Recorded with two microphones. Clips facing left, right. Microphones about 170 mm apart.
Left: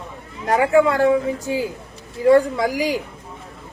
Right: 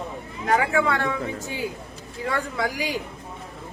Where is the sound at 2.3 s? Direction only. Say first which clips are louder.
Left 12 dB; 35° left (ahead or behind).